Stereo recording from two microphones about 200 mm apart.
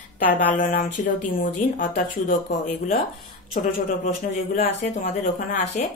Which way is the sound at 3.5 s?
35° left (ahead or behind).